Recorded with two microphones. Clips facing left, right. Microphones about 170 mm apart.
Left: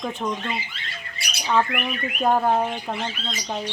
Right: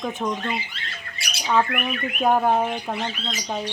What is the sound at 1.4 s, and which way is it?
Speech, centre (ahead or behind).